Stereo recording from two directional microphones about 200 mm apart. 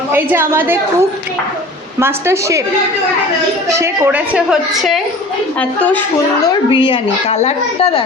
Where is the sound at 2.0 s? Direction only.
10° right (ahead or behind).